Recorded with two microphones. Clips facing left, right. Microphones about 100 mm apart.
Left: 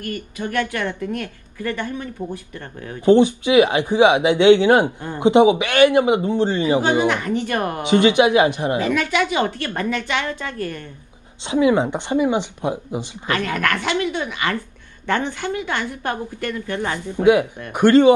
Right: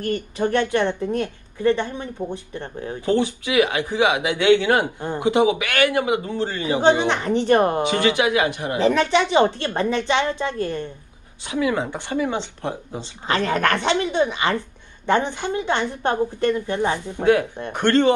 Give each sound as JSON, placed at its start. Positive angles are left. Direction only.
{"t": 0.0, "sound": "a woman's voice", "side_deg": -30}
{"t": 3.1, "sound": "speech", "side_deg": 20}
{"t": 7.1, "sound": "a woman's voice", "side_deg": -30}
{"t": 7.9, "sound": "speech", "side_deg": 20}
{"t": 8.7, "sound": "a woman's voice", "side_deg": -30}
{"t": 11.4, "sound": "speech", "side_deg": 25}
{"t": 13.3, "sound": "a woman's voice", "side_deg": -25}
{"t": 17.2, "sound": "speech", "side_deg": 15}